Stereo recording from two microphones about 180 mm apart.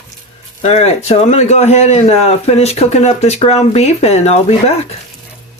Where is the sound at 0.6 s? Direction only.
35° left (ahead or behind).